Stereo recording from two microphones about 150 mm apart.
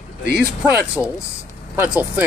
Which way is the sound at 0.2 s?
90° right.